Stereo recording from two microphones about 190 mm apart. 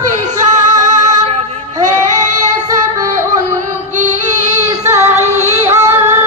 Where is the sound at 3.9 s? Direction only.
40° right (ahead or behind).